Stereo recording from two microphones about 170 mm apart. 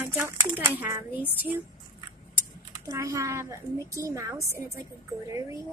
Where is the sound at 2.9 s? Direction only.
20° right (ahead or behind).